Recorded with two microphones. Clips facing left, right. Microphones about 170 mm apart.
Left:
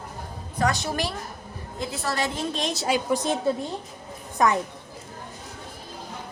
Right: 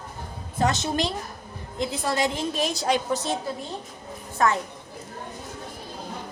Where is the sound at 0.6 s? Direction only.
20° right (ahead or behind).